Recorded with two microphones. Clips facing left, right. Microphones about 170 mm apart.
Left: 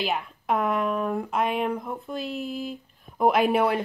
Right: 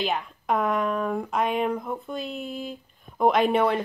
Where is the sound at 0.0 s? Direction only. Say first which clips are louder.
Right 1 dB; centre (ahead or behind).